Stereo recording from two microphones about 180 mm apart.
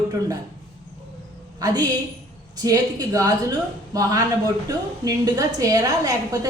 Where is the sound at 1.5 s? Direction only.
20° right (ahead or behind).